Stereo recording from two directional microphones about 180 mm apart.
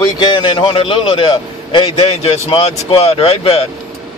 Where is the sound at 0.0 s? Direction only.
25° left (ahead or behind).